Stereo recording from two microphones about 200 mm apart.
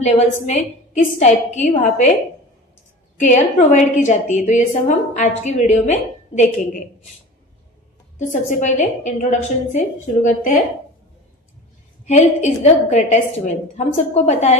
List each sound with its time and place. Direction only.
0.0 s a woman's voice: 35° left (ahead or behind)
3.2 s a woman's voice: 35° left (ahead or behind)
8.3 s a woman's voice: 35° left (ahead or behind)
12.2 s a woman's voice: 35° left (ahead or behind)